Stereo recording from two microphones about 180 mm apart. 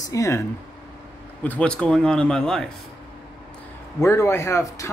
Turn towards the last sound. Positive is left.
turn(degrees=15)  # may be behind; listen again after turning